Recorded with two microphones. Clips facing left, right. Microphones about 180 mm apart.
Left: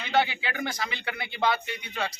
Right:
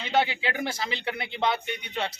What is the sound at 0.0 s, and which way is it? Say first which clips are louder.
Speech: right 1 dB; 25° right (ahead or behind).